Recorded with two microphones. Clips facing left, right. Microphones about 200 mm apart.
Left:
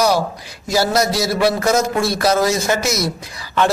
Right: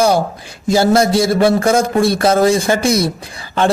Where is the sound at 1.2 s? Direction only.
50° right (ahead or behind).